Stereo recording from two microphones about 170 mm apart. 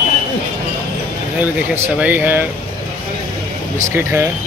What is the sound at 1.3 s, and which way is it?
Speech, 10° right (ahead or behind).